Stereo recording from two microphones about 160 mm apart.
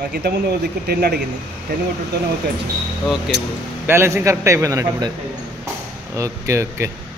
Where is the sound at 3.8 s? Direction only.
15° right (ahead or behind).